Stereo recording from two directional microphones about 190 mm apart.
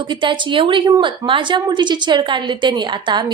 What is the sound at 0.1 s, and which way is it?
A woman's voice, 25° right (ahead or behind).